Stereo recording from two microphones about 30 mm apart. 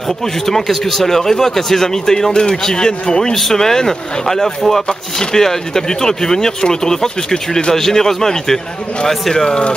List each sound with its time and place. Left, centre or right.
0.5 s speech: centre; by 9.7 s left